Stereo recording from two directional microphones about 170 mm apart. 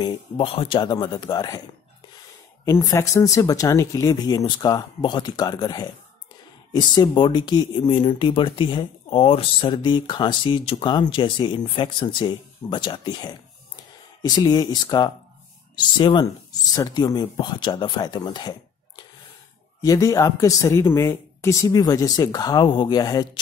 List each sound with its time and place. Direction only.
0.0 s speech: 30° left (ahead or behind)
2.6 s speech: 15° left (ahead or behind)